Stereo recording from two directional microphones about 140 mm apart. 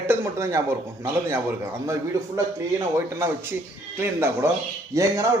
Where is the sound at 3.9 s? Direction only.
15° right (ahead or behind).